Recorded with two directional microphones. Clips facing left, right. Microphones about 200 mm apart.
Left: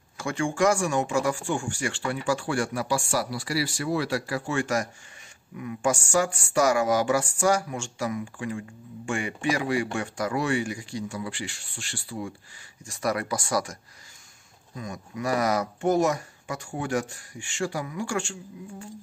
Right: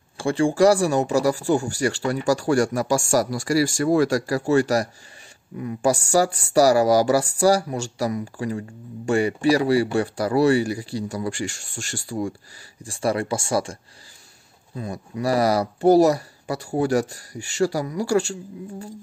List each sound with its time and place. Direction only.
0.2 s speech: 35° right (ahead or behind)
12.8 s speech: 30° right (ahead or behind)
14.8 s speech: 35° right (ahead or behind)